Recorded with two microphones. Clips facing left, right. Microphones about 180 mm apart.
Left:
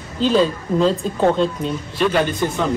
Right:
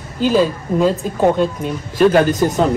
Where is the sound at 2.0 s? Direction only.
45° right (ahead or behind).